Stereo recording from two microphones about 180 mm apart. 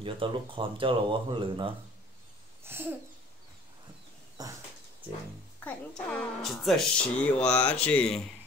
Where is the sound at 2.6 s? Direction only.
15° right (ahead or behind).